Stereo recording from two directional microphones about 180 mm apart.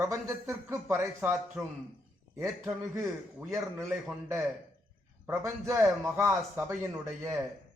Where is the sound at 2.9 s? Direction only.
15° right (ahead or behind).